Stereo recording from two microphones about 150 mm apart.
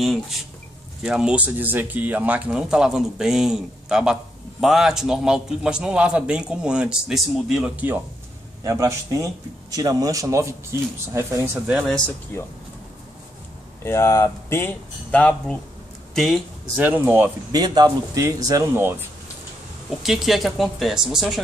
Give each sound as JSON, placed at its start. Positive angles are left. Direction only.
{"t": 0.0, "sound": "speech", "side_deg": 0}
{"t": 12.3, "sound": "speech", "side_deg": 15}
{"t": 13.8, "sound": "speech", "side_deg": 20}
{"t": 16.7, "sound": "speech", "side_deg": -10}
{"t": 17.5, "sound": "speech", "side_deg": -25}
{"t": 20.0, "sound": "speech", "side_deg": 0}